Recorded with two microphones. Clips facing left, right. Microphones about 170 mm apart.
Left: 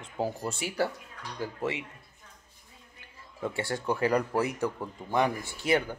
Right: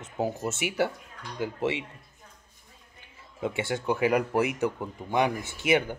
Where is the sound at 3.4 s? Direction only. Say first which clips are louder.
Right 2 dB; 20° right (ahead or behind).